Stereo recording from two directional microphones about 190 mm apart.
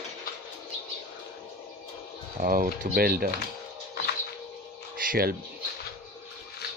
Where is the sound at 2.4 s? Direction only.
45° right (ahead or behind).